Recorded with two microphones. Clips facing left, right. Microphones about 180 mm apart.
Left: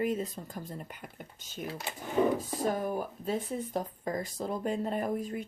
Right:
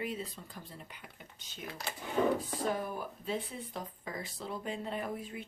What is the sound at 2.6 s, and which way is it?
Speech, 45° left (ahead or behind).